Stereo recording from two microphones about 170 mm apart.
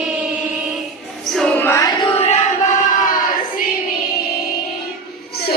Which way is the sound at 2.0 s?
35° left (ahead or behind).